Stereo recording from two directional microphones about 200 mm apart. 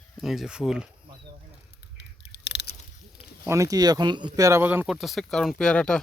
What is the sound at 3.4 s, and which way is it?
Speech, 15° right (ahead or behind).